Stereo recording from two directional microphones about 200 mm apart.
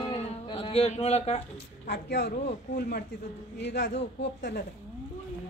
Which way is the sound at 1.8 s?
55° left (ahead or behind).